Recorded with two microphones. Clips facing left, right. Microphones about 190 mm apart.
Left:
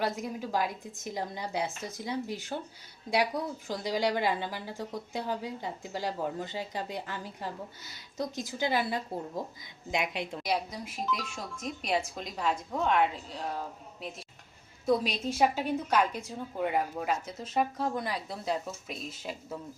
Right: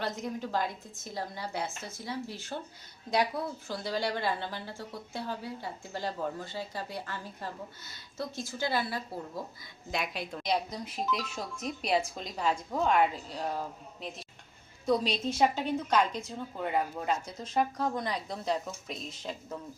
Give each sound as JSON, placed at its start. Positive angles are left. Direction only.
{"t": 0.0, "sound": "a woman's voice", "side_deg": 10}
{"t": 10.4, "sound": "a woman's voice", "side_deg": 5}
{"t": 14.8, "sound": "a woman's voice", "side_deg": 5}